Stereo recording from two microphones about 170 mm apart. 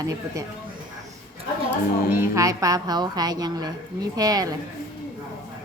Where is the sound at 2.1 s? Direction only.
15° right (ahead or behind).